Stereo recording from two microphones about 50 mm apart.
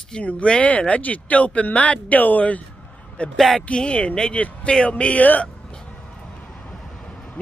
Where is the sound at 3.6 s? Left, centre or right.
Centre.